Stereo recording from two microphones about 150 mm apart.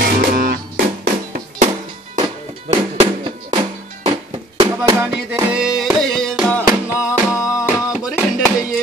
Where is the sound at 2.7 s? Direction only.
40° right (ahead or behind).